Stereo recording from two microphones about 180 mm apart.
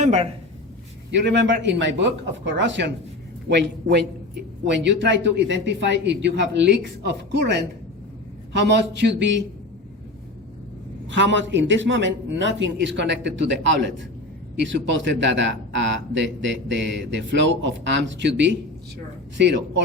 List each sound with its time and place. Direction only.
0.0 s speech: 40° right (ahead or behind)
1.1 s a man's voice: 80° right
3.5 s a man's voice: 70° right (ahead or behind)
11.1 s a man's voice: 90° right